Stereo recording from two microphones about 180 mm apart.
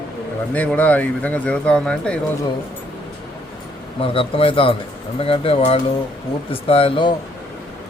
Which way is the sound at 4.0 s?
30° left (ahead or behind).